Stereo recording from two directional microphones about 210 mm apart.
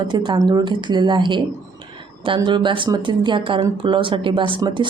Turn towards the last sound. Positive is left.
turn(degrees=-25)  # may be behind; listen again after turning